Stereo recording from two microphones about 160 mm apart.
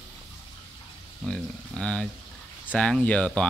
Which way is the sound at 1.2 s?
5° left (ahead or behind).